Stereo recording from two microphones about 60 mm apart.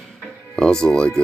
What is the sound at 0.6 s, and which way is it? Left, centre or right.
Speech, centre.